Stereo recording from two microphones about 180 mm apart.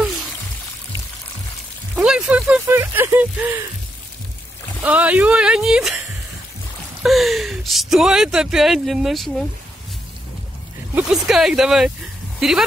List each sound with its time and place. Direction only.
2.0 s speech: 5° right (ahead or behind)
4.8 s speech: 5° right (ahead or behind)
11.0 s speech: centre (ahead or behind)